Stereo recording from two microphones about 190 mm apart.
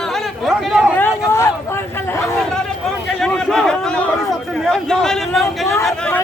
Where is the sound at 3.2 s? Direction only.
5° left (ahead or behind).